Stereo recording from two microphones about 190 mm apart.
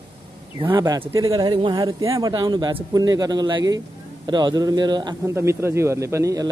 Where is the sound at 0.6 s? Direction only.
25° right (ahead or behind).